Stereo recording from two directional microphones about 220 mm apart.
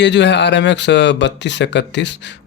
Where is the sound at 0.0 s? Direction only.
50° left (ahead or behind).